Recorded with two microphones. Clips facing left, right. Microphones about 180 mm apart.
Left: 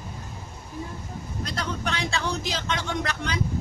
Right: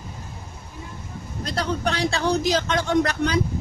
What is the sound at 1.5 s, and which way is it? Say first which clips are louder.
Speech: right 6 dB; 35° right (ahead or behind).